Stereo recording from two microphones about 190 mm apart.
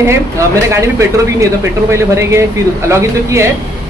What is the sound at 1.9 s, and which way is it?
Speech, 15° right (ahead or behind).